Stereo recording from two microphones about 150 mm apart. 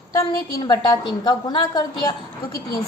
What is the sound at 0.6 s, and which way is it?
A woman's voice, 30° left (ahead or behind).